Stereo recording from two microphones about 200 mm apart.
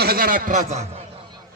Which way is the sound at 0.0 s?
50° right (ahead or behind).